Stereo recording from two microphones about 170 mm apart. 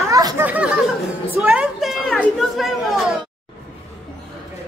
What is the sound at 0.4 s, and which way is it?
A woman's voice, 10° right (ahead or behind).